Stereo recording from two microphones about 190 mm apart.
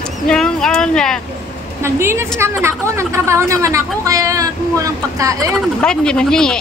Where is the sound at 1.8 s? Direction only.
15° right (ahead or behind).